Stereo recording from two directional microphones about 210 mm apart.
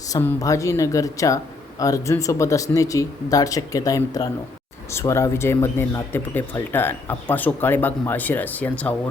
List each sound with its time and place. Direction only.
0.1 s speech: 15° left (ahead or behind)